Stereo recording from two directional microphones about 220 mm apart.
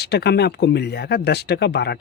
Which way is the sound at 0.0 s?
45° left (ahead or behind).